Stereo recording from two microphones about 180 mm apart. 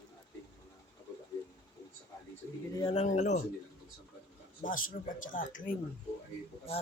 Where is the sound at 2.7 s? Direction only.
30° left (ahead or behind).